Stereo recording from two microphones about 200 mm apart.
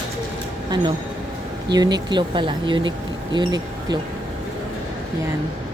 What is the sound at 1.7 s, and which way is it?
Speech, 20° right (ahead or behind).